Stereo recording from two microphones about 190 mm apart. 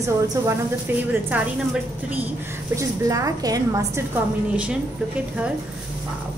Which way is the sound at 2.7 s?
15° right (ahead or behind).